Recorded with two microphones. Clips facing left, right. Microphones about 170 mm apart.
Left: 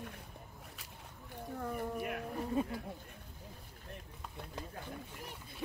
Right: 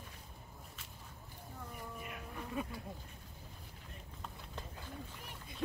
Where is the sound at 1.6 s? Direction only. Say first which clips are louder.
Left 10 dB; 60° left (ahead or behind).